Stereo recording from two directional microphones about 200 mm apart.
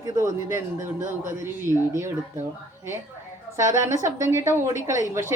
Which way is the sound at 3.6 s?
15° right (ahead or behind).